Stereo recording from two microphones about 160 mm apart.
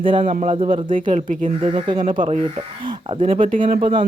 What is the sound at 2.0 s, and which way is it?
Speech, 50° right (ahead or behind).